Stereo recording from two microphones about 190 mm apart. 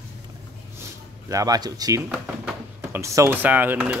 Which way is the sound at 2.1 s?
5° right (ahead or behind).